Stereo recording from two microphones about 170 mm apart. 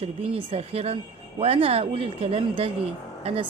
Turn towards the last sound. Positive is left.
turn(degrees=-35)  # may be behind; listen again after turning